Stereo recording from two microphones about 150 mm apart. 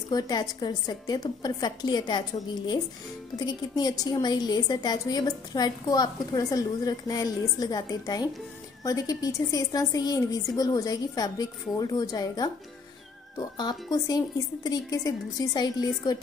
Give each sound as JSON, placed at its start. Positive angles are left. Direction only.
{"t": 0.1, "sound": "a woman's voice", "side_deg": 25}